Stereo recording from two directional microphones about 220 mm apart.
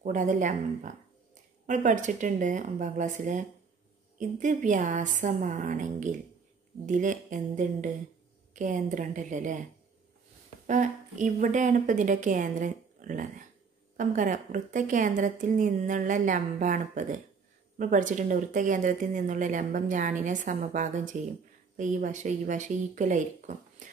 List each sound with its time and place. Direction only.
0.0 s speech: 35° right (ahead or behind)
4.2 s speech: 35° right (ahead or behind)
10.7 s speech: 35° right (ahead or behind)